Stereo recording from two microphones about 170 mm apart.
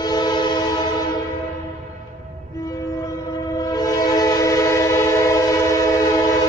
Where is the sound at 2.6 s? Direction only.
20° left (ahead or behind).